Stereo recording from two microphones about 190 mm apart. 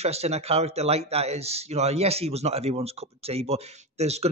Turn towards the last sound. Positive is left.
turn(degrees=-35)  # may be behind; listen again after turning